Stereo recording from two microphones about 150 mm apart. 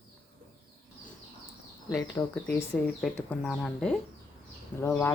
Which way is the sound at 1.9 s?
25° left (ahead or behind).